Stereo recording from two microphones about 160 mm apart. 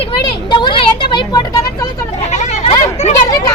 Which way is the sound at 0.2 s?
30° left (ahead or behind).